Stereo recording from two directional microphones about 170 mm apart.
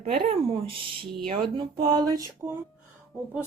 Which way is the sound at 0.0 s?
35° right (ahead or behind).